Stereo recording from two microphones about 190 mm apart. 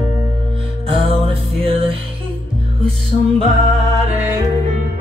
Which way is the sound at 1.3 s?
30° right (ahead or behind).